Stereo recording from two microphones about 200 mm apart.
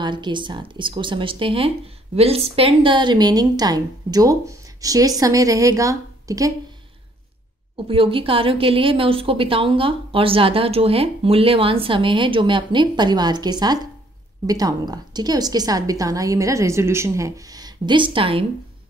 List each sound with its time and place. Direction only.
0.0 s a woman's voice: 25° right (ahead or behind)
7.7 s a woman's voice: 25° right (ahead or behind)